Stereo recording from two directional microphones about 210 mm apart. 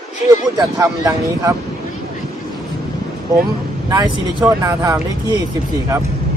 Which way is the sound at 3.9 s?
15° right (ahead or behind).